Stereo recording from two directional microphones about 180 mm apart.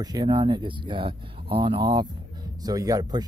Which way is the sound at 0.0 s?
25° right (ahead or behind).